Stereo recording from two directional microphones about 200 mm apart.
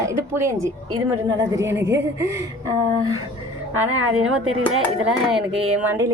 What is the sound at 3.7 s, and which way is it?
Speech, 90° right.